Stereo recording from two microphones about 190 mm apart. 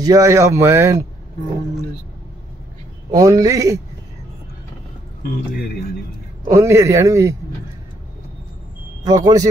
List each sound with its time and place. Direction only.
0.0 s speech: 20° right (ahead or behind)
3.1 s speech: 15° right (ahead or behind)
6.5 s speech: 15° right (ahead or behind)
9.0 s a man's voice: 20° right (ahead or behind)